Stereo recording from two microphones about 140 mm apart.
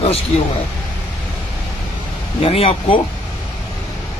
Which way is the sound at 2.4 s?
45° left (ahead or behind).